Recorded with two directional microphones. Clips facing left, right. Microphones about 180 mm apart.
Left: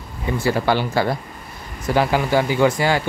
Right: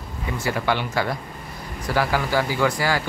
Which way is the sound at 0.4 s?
30° left (ahead or behind).